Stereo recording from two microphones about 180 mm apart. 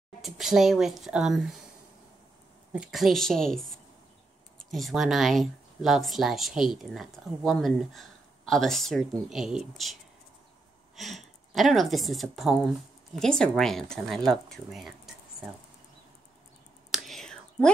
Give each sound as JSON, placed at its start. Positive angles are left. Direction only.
{"t": 0.2, "sound": "speech", "side_deg": 0}
{"t": 2.7, "sound": "speech", "side_deg": -5}
{"t": 11.0, "sound": "speech", "side_deg": 0}
{"t": 16.9, "sound": "whispering", "side_deg": 0}